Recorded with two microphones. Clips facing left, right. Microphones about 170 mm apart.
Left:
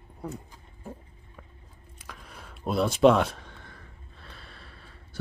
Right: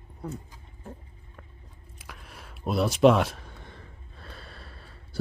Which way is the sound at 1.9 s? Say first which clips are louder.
Left 1 dB; 5° right (ahead or behind).